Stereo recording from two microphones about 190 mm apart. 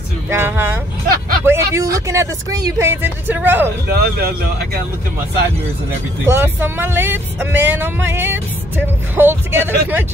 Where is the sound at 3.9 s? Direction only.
55° right (ahead or behind).